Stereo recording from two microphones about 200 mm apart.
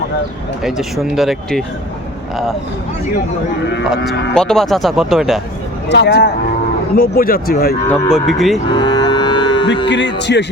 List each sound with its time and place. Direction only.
0.6 s speech: centre (ahead or behind)
4.4 s speech: centre (ahead or behind)
5.9 s speech: 55° left (ahead or behind)
8.1 s speech: centre (ahead or behind)
8.7 s music: 20° left (ahead or behind)
9.9 s speech: 60° left (ahead or behind)